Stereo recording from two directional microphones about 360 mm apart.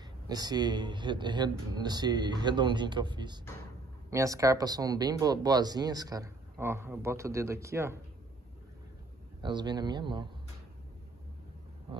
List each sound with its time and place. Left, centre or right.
0.3 s speech: centre
9.4 s speech: centre